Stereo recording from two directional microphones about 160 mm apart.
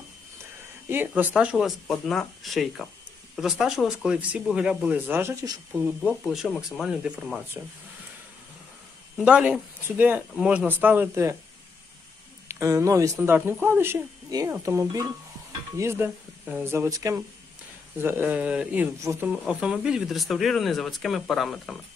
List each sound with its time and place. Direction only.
0.8 s speech: 10° right (ahead or behind)
5.7 s speech: centre (ahead or behind)
7.6 s speech: 20° right (ahead or behind)
9.2 s speech: 5° right (ahead or behind)
12.4 s speech: 20° right (ahead or behind); by 21.7 s centre (ahead or behind)